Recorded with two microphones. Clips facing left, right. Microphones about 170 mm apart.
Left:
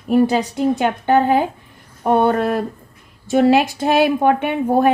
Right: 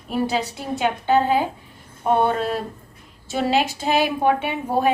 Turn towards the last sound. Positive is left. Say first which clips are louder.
# left 5 dB
turn(degrees=50)  # may be behind; listen again after turning